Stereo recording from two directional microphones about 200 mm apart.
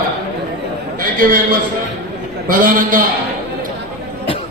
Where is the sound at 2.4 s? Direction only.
45° right (ahead or behind).